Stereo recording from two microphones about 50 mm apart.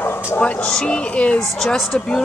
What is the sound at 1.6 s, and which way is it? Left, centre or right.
Speech, centre.